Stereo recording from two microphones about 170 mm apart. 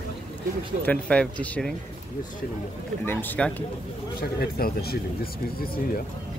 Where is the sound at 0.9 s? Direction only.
5° left (ahead or behind).